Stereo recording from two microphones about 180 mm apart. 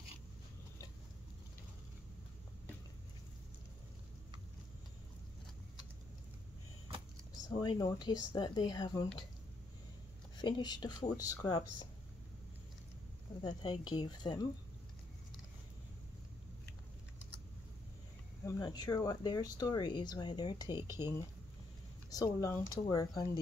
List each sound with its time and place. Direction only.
7.3 s speech: 20° left (ahead or behind)
10.3 s speech: 25° left (ahead or behind)
13.4 s speech: 25° left (ahead or behind)
18.4 s speech: 20° left (ahead or behind)
20.8 s speech: 15° right (ahead or behind)
22.1 s speech: 20° left (ahead or behind)